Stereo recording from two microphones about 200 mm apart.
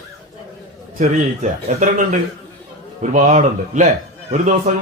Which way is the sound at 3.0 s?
35° right (ahead or behind).